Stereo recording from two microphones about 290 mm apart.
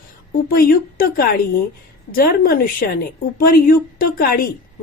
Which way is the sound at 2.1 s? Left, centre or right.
Left.